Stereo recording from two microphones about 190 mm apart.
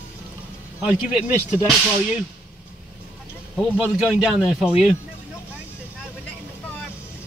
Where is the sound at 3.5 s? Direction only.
5° right (ahead or behind).